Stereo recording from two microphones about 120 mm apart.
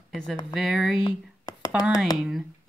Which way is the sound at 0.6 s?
5° right (ahead or behind).